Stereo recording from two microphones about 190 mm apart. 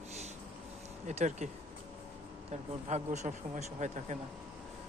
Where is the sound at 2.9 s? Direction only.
40° right (ahead or behind).